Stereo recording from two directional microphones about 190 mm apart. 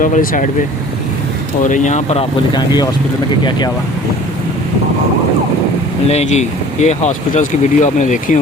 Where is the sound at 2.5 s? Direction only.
20° left (ahead or behind).